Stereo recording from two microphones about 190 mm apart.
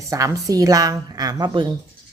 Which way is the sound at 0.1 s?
15° right (ahead or behind).